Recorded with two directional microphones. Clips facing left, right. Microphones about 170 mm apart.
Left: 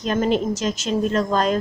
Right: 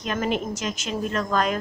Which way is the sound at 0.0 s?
30° left (ahead or behind).